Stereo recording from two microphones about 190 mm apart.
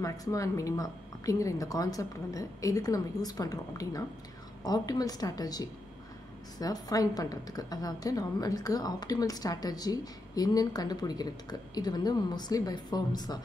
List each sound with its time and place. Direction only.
0.0 s a woman's voice: 15° left (ahead or behind)